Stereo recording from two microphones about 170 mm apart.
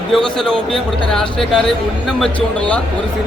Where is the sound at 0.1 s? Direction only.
5° left (ahead or behind).